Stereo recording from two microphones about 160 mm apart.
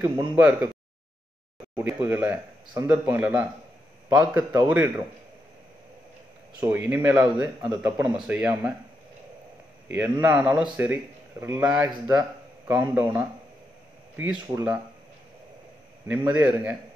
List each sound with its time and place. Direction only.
0.4 s speech: 10° right (ahead or behind)
1.8 s speech: 15° right (ahead or behind)
6.6 s speech: 10° right (ahead or behind)
9.8 s a man's voice: 15° right (ahead or behind)
12.7 s speech: 10° right (ahead or behind)
16.3 s speech: 10° right (ahead or behind)